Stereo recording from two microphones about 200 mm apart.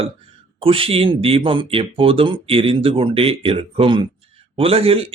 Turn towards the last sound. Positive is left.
turn(degrees=-30)  # may be behind; listen again after turning